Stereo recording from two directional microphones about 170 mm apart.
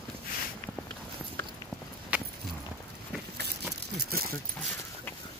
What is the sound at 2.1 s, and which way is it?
Walk, 5° right (ahead or behind).